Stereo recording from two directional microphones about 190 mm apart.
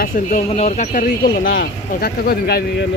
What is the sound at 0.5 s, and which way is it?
Speech, 35° left (ahead or behind).